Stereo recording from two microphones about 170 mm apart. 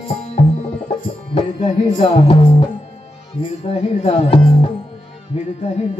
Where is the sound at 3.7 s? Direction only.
35° left (ahead or behind).